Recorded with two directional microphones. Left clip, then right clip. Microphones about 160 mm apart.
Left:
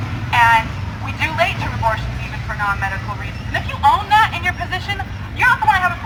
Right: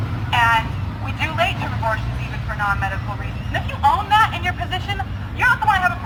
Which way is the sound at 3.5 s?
20° right (ahead or behind).